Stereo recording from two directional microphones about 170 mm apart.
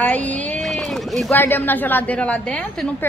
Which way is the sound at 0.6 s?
Centre (ahead or behind).